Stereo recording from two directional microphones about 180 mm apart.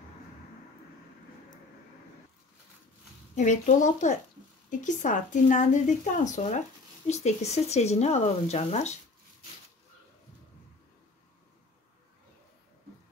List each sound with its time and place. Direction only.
3.3 s a woman's voice: 45° left (ahead or behind)